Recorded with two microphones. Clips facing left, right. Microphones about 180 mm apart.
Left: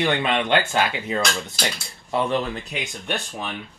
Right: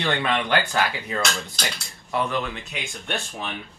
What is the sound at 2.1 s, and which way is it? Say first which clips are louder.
Speech: left 3 dB; 35° left (ahead or behind).